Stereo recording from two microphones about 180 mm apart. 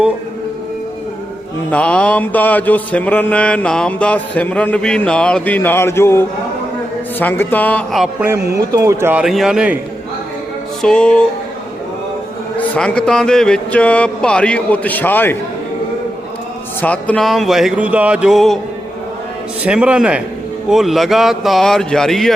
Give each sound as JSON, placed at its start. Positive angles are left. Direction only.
{"t": 1.7, "sound": "mantra", "side_deg": 5}
{"t": 8.0, "sound": "speech", "side_deg": -10}
{"t": 8.4, "sound": "speech", "side_deg": -60}
{"t": 8.7, "sound": "speech", "side_deg": -15}
{"t": 10.8, "sound": "music", "side_deg": 5}
{"t": 12.5, "sound": "mantra", "side_deg": 5}
{"t": 16.8, "sound": "music", "side_deg": 10}
{"t": 19.6, "sound": "music", "side_deg": -5}